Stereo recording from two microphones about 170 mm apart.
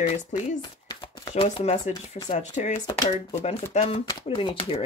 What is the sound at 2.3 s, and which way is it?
Speech, 45° left (ahead or behind).